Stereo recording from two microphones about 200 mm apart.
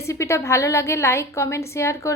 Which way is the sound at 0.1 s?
15° left (ahead or behind).